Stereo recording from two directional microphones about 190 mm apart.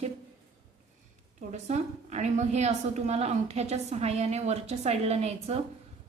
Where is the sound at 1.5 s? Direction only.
35° right (ahead or behind).